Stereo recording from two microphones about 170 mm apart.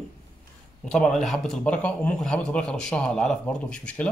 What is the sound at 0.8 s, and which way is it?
A man's voice, 5° left (ahead or behind).